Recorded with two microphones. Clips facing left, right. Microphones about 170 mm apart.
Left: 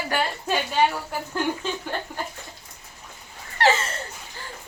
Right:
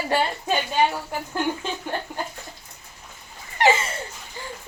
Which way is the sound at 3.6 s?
10° right (ahead or behind).